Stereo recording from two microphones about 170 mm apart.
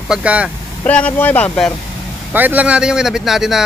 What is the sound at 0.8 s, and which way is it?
Speech, 10° left (ahead or behind).